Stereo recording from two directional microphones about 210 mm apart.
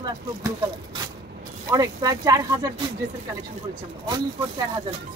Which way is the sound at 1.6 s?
15° right (ahead or behind).